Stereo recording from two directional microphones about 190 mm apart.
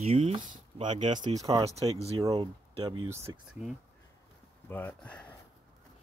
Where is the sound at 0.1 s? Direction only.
30° right (ahead or behind).